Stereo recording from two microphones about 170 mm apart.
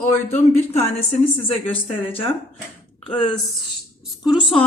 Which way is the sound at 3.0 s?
30° left (ahead or behind).